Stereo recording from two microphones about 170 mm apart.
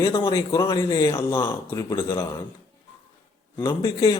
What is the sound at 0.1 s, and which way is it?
Speech, 30° left (ahead or behind).